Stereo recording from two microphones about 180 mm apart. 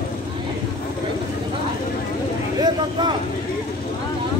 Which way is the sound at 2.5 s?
25° right (ahead or behind).